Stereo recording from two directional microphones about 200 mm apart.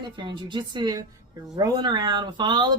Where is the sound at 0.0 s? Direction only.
25° right (ahead or behind).